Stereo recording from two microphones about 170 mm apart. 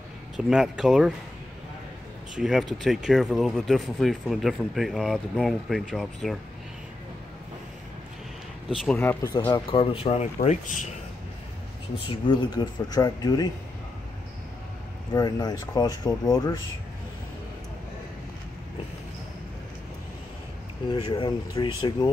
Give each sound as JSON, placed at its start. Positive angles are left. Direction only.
{"t": 0.5, "sound": "speech", "side_deg": -5}
{"t": 2.3, "sound": "speech", "side_deg": 0}
{"t": 8.6, "sound": "speech", "side_deg": 10}
{"t": 9.5, "sound": "speech", "side_deg": 30}
{"t": 12.1, "sound": "speech", "side_deg": 25}
{"t": 15.1, "sound": "speech", "side_deg": 25}
{"t": 20.9, "sound": "speech", "side_deg": 30}